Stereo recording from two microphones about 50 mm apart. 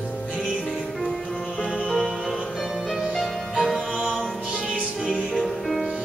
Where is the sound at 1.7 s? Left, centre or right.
Centre.